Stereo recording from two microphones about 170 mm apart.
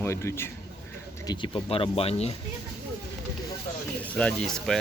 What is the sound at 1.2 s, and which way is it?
Speech, 25° left (ahead or behind).